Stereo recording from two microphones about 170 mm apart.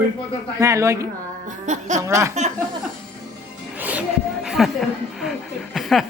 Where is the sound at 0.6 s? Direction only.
20° right (ahead or behind).